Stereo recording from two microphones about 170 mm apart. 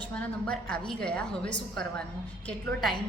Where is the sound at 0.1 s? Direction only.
5° left (ahead or behind).